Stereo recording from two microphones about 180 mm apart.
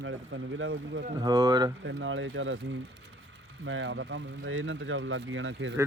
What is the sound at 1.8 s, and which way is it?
Speech, 90° right.